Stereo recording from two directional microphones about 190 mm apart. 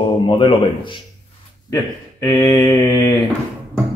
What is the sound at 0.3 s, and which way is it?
Speech, 25° left (ahead or behind).